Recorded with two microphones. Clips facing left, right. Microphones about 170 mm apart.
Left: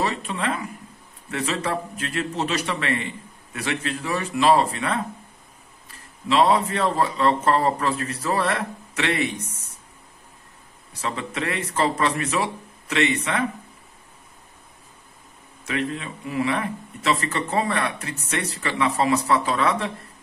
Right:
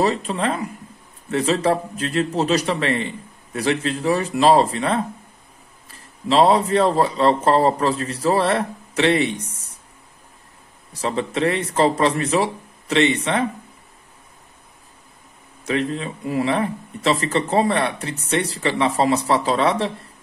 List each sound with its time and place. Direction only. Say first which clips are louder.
0.0 s a man's voice: right 5 dB; 35° right (ahead or behind)
11.0 s a man's voice: right 7 dB; 35° right (ahead or behind)
15.6 s a man's voice: right 4 dB; 35° right (ahead or behind)